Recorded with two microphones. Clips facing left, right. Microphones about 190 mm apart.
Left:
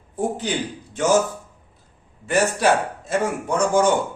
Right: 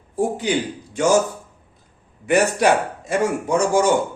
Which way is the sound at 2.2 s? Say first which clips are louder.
Right 2 dB; 15° right (ahead or behind).